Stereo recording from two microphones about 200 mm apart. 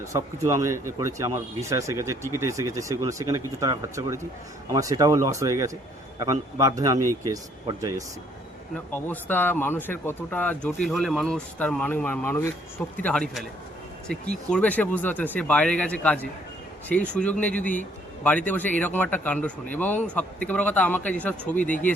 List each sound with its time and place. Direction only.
0.0 s speech: 15° right (ahead or behind)
8.9 s a man's voice: 10° left (ahead or behind)
14.5 s speech: 10° left (ahead or behind)